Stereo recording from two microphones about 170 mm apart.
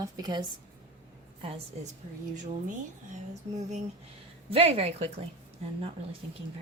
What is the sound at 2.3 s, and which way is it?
A woman's voice, 45° right (ahead or behind).